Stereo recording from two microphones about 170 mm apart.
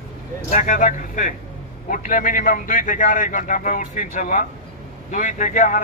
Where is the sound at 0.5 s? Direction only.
50° left (ahead or behind).